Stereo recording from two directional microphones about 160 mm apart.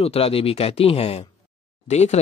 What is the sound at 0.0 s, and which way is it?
Speech, 40° left (ahead or behind).